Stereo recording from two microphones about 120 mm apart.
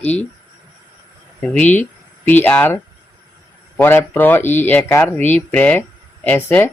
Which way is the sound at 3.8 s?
15° left (ahead or behind).